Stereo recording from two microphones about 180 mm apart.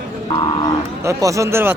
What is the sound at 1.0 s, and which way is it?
Speech, 15° right (ahead or behind).